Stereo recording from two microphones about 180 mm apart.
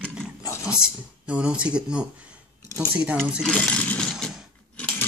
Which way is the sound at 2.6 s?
20° left (ahead or behind).